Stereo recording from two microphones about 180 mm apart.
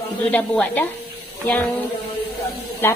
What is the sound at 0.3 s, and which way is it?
Speech, 10° left (ahead or behind).